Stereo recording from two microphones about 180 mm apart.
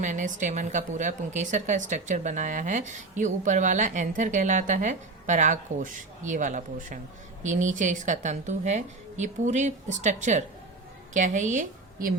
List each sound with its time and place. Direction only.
0.0 s a woman's voice: 45° right (ahead or behind)